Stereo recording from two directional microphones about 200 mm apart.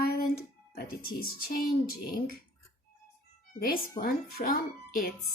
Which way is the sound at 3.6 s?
45° left (ahead or behind).